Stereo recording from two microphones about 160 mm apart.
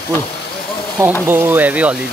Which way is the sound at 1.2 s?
10° right (ahead or behind).